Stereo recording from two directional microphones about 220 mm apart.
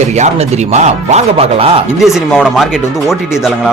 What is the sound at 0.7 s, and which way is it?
Speech, 30° right (ahead or behind).